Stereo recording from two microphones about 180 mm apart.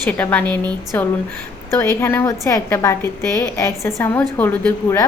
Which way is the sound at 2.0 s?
15° left (ahead or behind).